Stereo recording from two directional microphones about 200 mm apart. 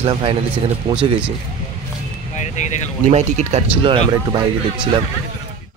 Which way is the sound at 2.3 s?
35° left (ahead or behind).